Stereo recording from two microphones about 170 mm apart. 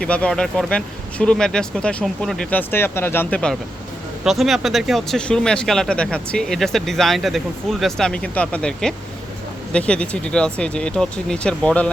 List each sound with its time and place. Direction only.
0.0 s speech: 5° left (ahead or behind)